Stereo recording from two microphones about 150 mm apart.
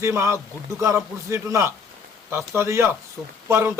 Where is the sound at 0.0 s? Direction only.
20° right (ahead or behind).